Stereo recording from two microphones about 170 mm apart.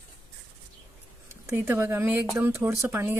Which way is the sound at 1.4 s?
15° right (ahead or behind).